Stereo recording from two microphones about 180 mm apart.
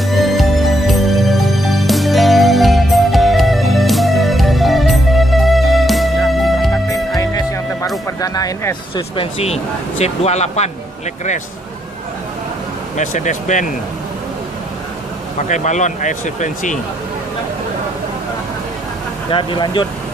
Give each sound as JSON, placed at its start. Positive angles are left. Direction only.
{"t": 0.1, "sound": "music", "side_deg": 0}
{"t": 7.2, "sound": "music", "side_deg": 20}
{"t": 10.0, "sound": "speech", "side_deg": 35}
{"t": 13.0, "sound": "speech", "side_deg": 45}
{"t": 15.4, "sound": "speech", "side_deg": 40}
{"t": 19.3, "sound": "speech", "side_deg": 30}